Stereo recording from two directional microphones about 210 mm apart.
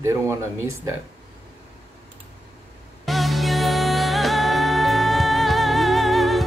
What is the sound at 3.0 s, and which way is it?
Music, centre (ahead or behind).